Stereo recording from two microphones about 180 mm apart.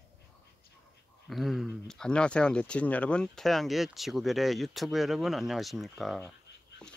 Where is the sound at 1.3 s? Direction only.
Centre (ahead or behind).